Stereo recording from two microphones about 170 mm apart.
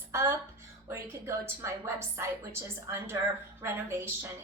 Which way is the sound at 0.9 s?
15° right (ahead or behind).